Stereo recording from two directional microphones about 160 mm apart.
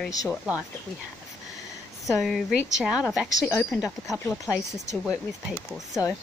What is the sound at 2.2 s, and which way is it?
Speech, centre (ahead or behind).